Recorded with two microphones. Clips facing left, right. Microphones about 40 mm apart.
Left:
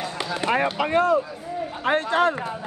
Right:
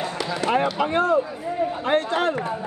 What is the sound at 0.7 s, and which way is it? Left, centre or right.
Speech, left.